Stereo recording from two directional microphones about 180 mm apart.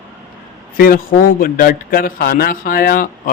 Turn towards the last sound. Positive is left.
turn(degrees=55)  # may be behind; listen again after turning